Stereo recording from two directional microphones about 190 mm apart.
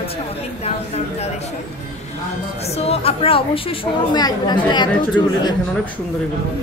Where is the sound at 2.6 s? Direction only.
35° left (ahead or behind).